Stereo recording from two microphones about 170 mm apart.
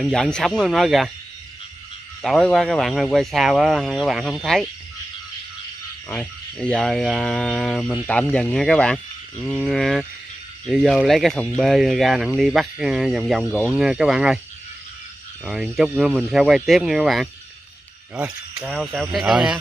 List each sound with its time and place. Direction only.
0.0 s speech: 5° left (ahead or behind)
2.2 s speech: 5° left (ahead or behind)
6.0 s speech: 5° left (ahead or behind)
13.4 s speech: 10° left (ahead or behind)
13.7 s speech: 5° right (ahead or behind)
15.4 s speech: 5° right (ahead or behind)